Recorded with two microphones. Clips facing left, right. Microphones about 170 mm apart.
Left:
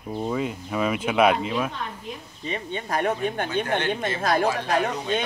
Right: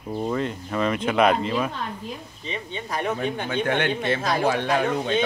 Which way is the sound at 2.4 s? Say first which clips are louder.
Left 3 dB; 50° left (ahead or behind).